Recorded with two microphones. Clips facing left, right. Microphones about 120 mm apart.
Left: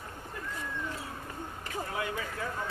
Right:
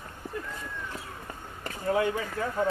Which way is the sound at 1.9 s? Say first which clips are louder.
Right 12 dB; 40° right (ahead or behind).